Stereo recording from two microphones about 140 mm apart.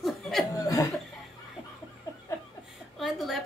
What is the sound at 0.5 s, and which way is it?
Chuckle, 25° left (ahead or behind).